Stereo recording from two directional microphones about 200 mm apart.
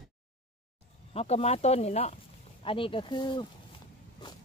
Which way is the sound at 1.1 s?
30° left (ahead or behind).